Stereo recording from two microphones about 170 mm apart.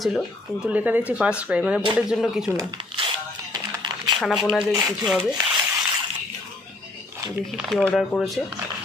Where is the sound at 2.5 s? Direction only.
25° right (ahead or behind).